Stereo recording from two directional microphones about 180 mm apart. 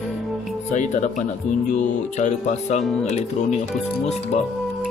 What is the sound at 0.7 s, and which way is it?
Speech, 40° left (ahead or behind).